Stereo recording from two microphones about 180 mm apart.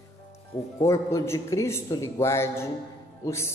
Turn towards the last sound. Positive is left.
turn(degrees=15)  # may be behind; listen again after turning